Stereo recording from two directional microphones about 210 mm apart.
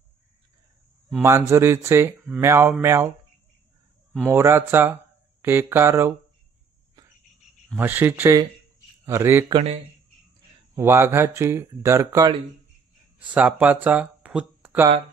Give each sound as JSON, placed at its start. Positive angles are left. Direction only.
{"t": 1.2, "sound": "speech", "side_deg": -15}
{"t": 4.3, "sound": "speech", "side_deg": -10}
{"t": 7.7, "sound": "speech", "side_deg": -10}
{"t": 10.7, "sound": "speech", "side_deg": -10}